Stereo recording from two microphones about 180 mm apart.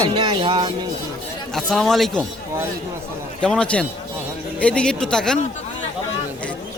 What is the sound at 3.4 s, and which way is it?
A man's voice, 5° left (ahead or behind).